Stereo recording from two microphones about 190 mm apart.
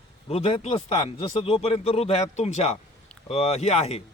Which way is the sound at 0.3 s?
30° left (ahead or behind).